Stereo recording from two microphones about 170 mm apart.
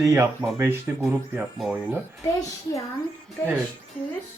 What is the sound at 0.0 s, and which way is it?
Speech, 15° right (ahead or behind).